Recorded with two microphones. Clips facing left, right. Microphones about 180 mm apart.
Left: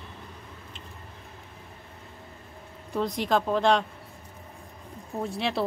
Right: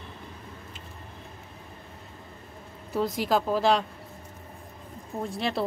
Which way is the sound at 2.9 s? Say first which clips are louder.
Even; 5° right (ahead or behind).